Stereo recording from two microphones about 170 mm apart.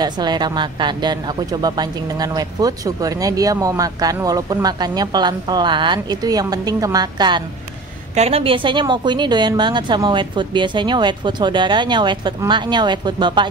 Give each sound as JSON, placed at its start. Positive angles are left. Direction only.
{"t": 0.0, "sound": "speech", "side_deg": -25}